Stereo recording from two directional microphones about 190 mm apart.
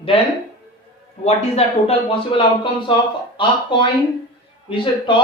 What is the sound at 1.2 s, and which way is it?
Speech, 30° left (ahead or behind).